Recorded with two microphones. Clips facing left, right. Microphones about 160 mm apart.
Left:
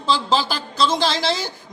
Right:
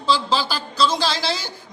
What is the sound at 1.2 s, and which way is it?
Speech, 50° left (ahead or behind).